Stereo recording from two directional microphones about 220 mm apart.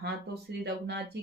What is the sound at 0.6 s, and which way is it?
Speech, 50° right (ahead or behind).